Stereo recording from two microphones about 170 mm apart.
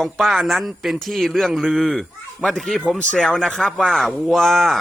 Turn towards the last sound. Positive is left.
turn(degrees=0)  # may be behind; listen again after turning